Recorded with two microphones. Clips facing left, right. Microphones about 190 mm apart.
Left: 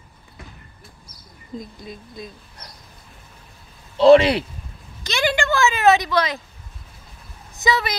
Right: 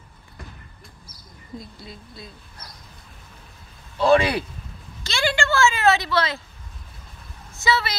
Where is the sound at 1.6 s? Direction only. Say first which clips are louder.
Left 4 dB; 20° left (ahead or behind).